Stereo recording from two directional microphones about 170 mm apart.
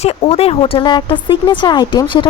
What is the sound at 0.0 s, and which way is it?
Speech, 40° left (ahead or behind).